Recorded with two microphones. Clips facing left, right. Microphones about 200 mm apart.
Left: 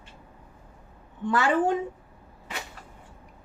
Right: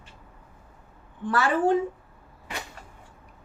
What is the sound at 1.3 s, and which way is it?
Speech, 20° left (ahead or behind).